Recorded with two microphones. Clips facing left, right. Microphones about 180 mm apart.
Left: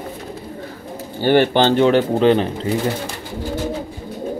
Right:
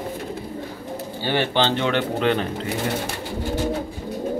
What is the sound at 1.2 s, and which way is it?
Speech, 50° left (ahead or behind).